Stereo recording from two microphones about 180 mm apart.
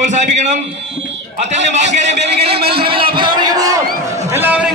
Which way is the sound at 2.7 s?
30° right (ahead or behind).